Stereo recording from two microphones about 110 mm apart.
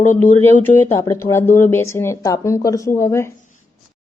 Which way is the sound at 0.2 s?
15° left (ahead or behind).